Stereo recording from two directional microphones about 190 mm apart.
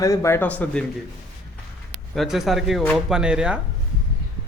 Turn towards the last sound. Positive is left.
turn(degrees=-5)  # may be behind; listen again after turning